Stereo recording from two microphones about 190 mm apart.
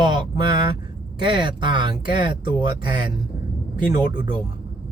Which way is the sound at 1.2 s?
25° right (ahead or behind).